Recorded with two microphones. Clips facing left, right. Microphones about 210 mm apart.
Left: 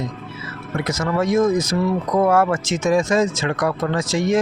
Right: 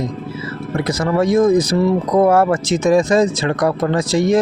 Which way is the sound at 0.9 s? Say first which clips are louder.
Right 4 dB; 35° right (ahead or behind).